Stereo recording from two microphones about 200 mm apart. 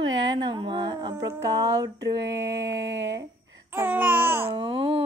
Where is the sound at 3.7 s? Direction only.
10° right (ahead or behind).